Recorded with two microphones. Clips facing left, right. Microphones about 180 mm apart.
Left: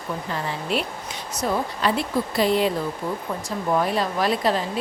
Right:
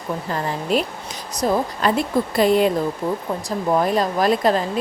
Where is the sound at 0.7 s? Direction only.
40° right (ahead or behind).